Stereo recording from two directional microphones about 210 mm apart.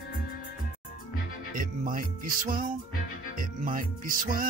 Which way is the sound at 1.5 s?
40° right (ahead or behind).